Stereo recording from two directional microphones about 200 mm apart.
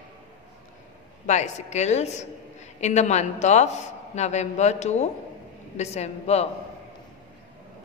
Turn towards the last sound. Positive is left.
turn(degrees=30)  # may be behind; listen again after turning